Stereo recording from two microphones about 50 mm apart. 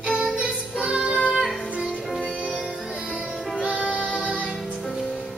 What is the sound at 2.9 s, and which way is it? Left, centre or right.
Music, centre.